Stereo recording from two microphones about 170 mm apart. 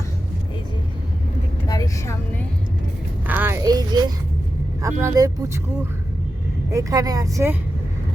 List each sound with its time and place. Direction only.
1.6 s vehicle: 20° left (ahead or behind)
3.2 s a sound: 10° right (ahead or behind)
4.8 s speech: 20° right (ahead or behind)
6.7 s speech: 20° right (ahead or behind)